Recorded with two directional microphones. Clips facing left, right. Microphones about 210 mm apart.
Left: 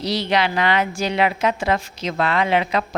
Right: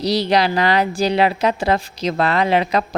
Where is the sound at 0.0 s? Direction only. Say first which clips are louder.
Right 4 dB; 35° right (ahead or behind).